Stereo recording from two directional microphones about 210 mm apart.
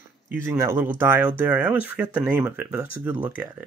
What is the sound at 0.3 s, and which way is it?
Speech, 15° right (ahead or behind).